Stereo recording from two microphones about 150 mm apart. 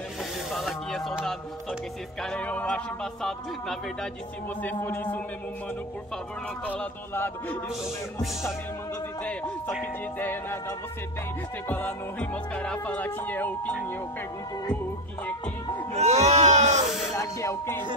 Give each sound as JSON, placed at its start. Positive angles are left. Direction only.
{"t": 0.5, "sound": "music", "side_deg": 0}
{"t": 2.2, "sound": "speech", "side_deg": 10}
{"t": 6.6, "sound": "speech", "side_deg": 10}
{"t": 9.2, "sound": "music", "side_deg": 10}
{"t": 11.7, "sound": "speech", "side_deg": 10}
{"t": 15.9, "sound": "speech", "side_deg": -50}
{"t": 17.2, "sound": "music", "side_deg": 20}